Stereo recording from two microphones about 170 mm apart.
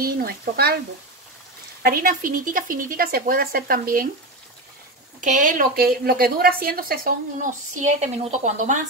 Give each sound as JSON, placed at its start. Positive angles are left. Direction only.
{"t": 0.0, "sound": "a woman's voice", "side_deg": -65}
{"t": 1.9, "sound": "a woman's voice", "side_deg": -55}
{"t": 5.4, "sound": "a woman's voice", "side_deg": -50}